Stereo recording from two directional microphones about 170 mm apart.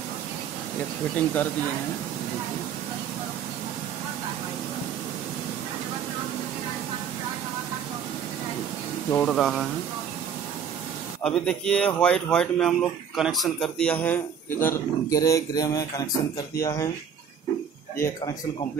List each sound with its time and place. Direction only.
1.1 s speech: 10° left (ahead or behind)
9.1 s speech: 5° left (ahead or behind)
11.2 s speech: 5° left (ahead or behind)
17.9 s speech: 15° left (ahead or behind)